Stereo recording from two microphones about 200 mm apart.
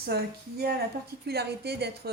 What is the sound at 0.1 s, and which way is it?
A woman's voice, 50° right (ahead or behind).